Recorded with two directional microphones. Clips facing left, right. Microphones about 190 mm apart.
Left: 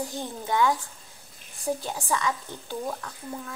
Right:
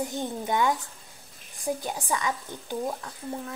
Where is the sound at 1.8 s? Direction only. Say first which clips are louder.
Left 1 dB; 15° right (ahead or behind).